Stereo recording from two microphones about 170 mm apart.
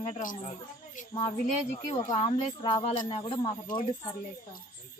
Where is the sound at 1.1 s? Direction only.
30° left (ahead or behind).